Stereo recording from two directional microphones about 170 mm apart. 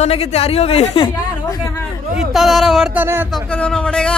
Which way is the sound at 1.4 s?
20° left (ahead or behind).